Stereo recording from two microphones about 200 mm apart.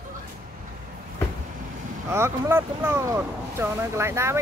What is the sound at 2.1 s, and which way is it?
Speech, 10° right (ahead or behind).